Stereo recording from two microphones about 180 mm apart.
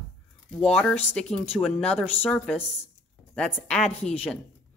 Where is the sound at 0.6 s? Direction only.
5° left (ahead or behind).